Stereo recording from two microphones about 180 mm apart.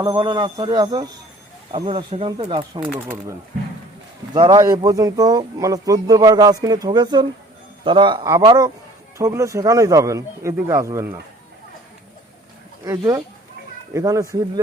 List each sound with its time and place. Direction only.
0.0 s speech: 25° right (ahead or behind)
2.9 s speech: 10° right (ahead or behind)
4.4 s speech: 25° right (ahead or behind)
12.8 s speech: 20° right (ahead or behind)